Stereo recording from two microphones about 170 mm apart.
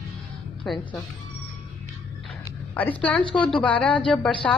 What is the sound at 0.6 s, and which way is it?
Speech, centre (ahead or behind).